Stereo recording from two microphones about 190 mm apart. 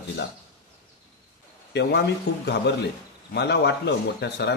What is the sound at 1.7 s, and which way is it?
Speech, 65° left (ahead or behind).